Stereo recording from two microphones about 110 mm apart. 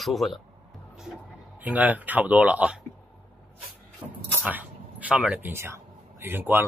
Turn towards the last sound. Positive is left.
turn(degrees=-20)  # may be behind; listen again after turning